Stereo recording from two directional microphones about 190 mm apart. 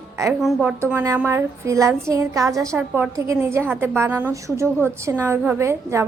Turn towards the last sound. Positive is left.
turn(degrees=-15)  # may be behind; listen again after turning